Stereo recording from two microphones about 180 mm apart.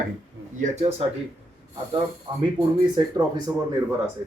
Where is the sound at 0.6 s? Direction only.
45° right (ahead or behind).